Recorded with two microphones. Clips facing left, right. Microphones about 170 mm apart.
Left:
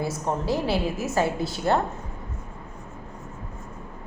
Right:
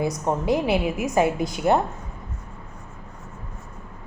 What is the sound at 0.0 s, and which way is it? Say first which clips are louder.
A woman's voice: right 3 dB; 20° right (ahead or behind).